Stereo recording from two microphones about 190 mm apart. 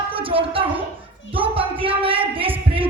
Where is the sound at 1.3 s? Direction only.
30° right (ahead or behind).